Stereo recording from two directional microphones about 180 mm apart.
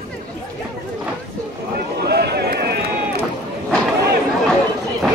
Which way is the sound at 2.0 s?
65° right (ahead or behind).